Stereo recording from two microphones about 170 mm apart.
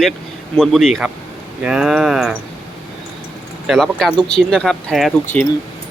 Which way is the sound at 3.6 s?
Centre (ahead or behind).